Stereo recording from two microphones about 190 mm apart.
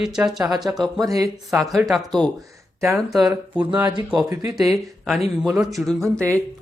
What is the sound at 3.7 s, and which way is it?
Speech, 20° right (ahead or behind).